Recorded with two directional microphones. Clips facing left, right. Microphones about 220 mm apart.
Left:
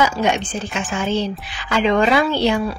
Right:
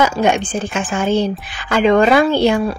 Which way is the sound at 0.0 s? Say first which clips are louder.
Right 3 dB; 50° right (ahead or behind).